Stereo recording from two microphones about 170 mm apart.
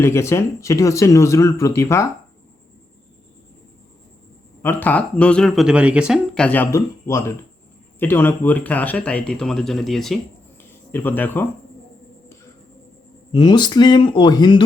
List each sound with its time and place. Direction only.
0.0 s speech: 15° left (ahead or behind)
4.6 s speech: 10° left (ahead or behind); by 6.1 s 5° right (ahead or behind)
6.3 s speech: 10° left (ahead or behind)
10.6 s a sound: 10° left (ahead or behind)
13.3 s speech: 25° left (ahead or behind)